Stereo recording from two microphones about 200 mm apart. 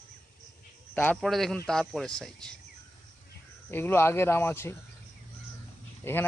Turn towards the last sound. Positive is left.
turn(degrees=10)  # may be behind; listen again after turning